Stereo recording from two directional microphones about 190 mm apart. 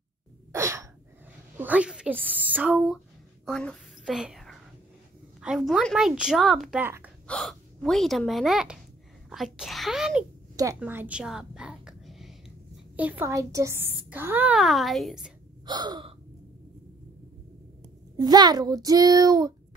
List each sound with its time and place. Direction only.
0.5 s sneeze: 15° right (ahead or behind)
1.6 s a woman's voice: 5° right (ahead or behind)
10.5 s a sound: 20° right (ahead or behind); by 12.4 s centre (ahead or behind)
12.9 s a child's voice: 10° right (ahead or behind)
15.6 s a child's voice: 20° right (ahead or behind)
18.1 s a child's voice: 20° right (ahead or behind)